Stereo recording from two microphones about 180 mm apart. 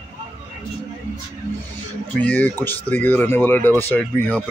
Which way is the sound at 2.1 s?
10° left (ahead or behind).